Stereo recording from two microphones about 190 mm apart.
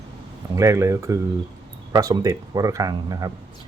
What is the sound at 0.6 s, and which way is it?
Speech, 15° right (ahead or behind).